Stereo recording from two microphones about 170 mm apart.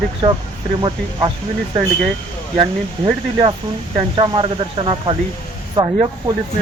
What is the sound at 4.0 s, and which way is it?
Speech, 30° right (ahead or behind).